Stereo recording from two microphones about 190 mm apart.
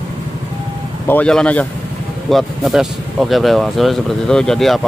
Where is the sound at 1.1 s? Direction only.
5° left (ahead or behind).